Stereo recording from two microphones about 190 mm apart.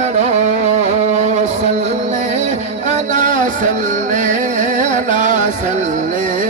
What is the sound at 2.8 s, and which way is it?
Music, 40° right (ahead or behind).